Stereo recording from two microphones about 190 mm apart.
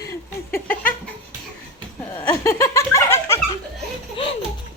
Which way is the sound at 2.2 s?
15° left (ahead or behind).